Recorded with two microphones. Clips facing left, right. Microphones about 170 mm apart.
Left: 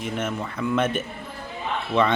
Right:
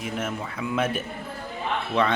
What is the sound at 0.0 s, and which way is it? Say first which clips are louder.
Speech: left 2 dB; 5° right (ahead or behind).